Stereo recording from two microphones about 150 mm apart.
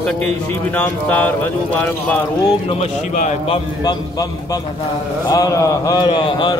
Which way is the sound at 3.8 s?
25° left (ahead or behind).